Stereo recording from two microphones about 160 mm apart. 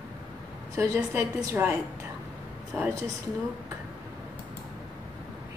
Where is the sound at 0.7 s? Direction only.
20° right (ahead or behind).